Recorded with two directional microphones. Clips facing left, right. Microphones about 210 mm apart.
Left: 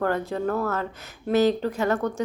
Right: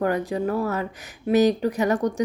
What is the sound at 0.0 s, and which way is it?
Speech, 15° right (ahead or behind).